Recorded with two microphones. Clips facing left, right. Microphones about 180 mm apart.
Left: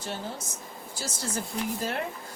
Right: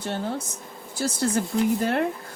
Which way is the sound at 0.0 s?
60° right (ahead or behind).